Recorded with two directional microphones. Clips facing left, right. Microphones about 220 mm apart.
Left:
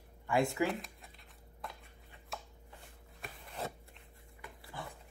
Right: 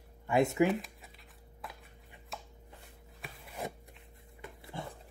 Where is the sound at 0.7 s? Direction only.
Centre (ahead or behind).